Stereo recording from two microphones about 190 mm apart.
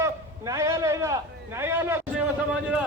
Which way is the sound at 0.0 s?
15° right (ahead or behind).